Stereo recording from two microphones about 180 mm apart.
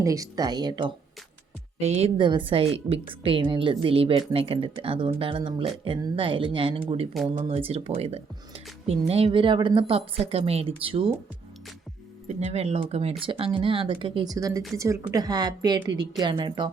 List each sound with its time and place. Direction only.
0.0 s a woman's voice: 20° right (ahead or behind)
1.8 s a woman's voice: 35° right (ahead or behind)
12.4 s a woman's voice: 35° right (ahead or behind)